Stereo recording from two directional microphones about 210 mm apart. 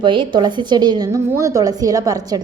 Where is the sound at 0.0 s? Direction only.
20° right (ahead or behind).